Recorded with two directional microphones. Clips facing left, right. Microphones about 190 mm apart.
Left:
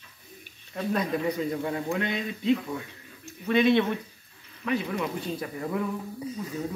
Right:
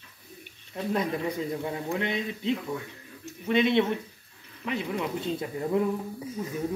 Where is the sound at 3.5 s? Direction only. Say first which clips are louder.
Left 1 dB; 20° right (ahead or behind).